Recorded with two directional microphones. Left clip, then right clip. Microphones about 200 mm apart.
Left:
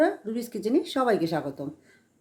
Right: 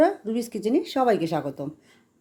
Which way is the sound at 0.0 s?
20° right (ahead or behind).